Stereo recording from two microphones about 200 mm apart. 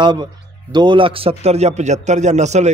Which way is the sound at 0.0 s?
20° right (ahead or behind).